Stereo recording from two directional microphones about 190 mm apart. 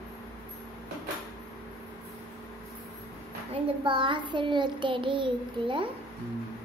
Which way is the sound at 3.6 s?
25° right (ahead or behind).